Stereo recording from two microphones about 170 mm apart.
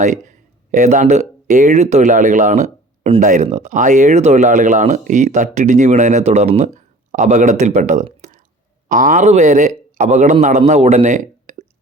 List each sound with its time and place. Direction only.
0.0 s speech: 45° right (ahead or behind)